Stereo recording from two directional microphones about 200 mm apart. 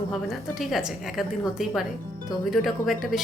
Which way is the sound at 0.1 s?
Centre (ahead or behind).